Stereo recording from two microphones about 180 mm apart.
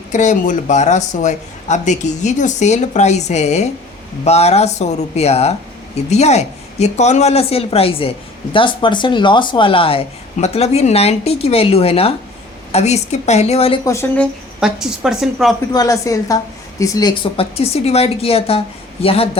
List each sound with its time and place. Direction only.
0.1 s speech: 45° left (ahead or behind)
13.8 s speech: 15° left (ahead or behind)
14.6 s a woman's voice: 5° right (ahead or behind)
15.7 s a woman's voice: 20° left (ahead or behind)